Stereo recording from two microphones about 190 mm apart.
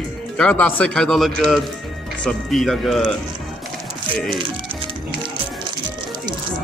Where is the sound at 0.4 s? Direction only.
5° left (ahead or behind).